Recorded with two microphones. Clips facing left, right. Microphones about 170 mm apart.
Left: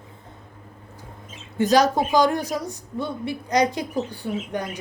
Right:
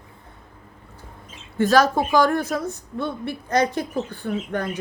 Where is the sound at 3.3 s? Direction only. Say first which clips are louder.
Left 1 dB; 15° left (ahead or behind).